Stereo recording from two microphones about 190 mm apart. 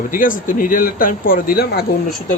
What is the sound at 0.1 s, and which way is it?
Speech, 45° left (ahead or behind).